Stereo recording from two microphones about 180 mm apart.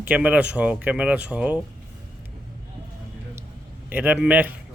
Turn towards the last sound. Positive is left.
turn(degrees=-10)  # may be behind; listen again after turning